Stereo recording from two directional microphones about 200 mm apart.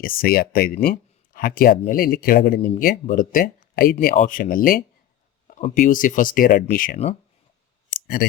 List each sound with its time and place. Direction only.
0.0 s speech: 45° left (ahead or behind)
8.0 s speech: 50° left (ahead or behind)